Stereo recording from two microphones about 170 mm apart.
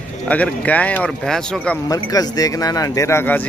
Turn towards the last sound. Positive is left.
turn(degrees=15)  # may be behind; listen again after turning